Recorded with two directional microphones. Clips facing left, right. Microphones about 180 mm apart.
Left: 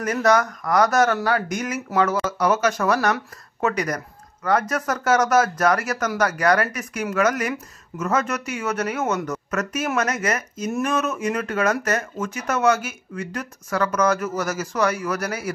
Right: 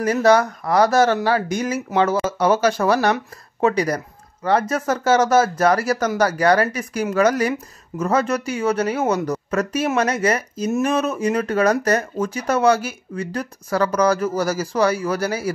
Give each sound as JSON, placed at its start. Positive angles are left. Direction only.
{"t": 0.0, "sound": "speech", "side_deg": -30}